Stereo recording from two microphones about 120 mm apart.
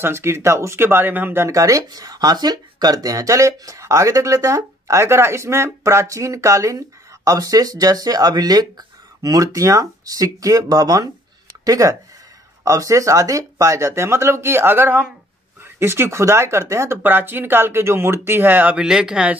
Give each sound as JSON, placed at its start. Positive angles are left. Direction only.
{"t": 0.0, "sound": "speech", "side_deg": -20}